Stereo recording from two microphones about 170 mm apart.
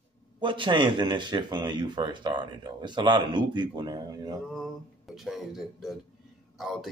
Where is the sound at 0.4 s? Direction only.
30° right (ahead or behind).